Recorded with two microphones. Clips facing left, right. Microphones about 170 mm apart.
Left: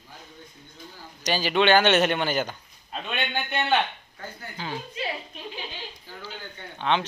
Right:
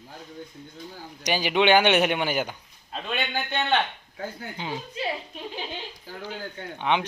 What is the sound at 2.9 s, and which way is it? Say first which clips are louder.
Speech: right 1 dB; centre (ahead or behind).